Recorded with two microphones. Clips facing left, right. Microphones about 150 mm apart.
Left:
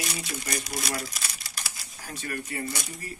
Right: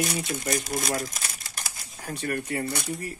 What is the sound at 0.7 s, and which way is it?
Crumpling, 45° right (ahead or behind).